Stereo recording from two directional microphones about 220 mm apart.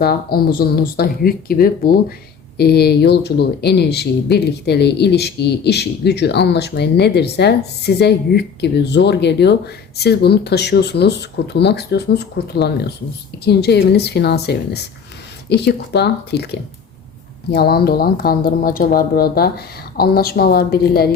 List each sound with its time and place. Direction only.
0.0 s speech: 45° left (ahead or behind)